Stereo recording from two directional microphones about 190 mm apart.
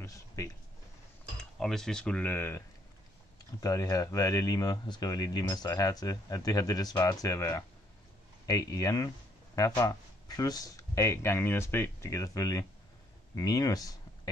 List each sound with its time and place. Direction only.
0.0 s a sound: 15° left (ahead or behind)
1.4 s speech: centre (ahead or behind)
3.6 s speech: 20° left (ahead or behind)